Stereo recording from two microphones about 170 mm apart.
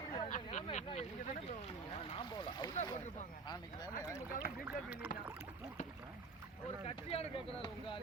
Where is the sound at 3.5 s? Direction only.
25° left (ahead or behind).